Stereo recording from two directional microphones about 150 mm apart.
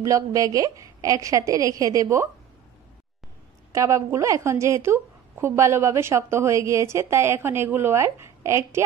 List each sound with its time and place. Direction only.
0.0 s a woman's voice: 20° right (ahead or behind)
3.7 s a woman's voice: 20° right (ahead or behind)